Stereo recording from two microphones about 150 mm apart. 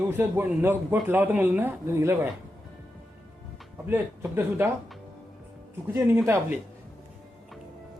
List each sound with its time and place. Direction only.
0.1 s speech: 15° right (ahead or behind)
3.8 s speech: 15° right (ahead or behind)
5.9 s speech: 15° right (ahead or behind)